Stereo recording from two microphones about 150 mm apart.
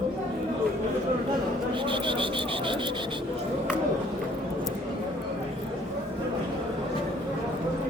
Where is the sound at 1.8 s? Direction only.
35° right (ahead or behind).